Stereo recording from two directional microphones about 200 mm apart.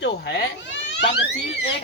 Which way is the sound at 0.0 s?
60° left (ahead or behind).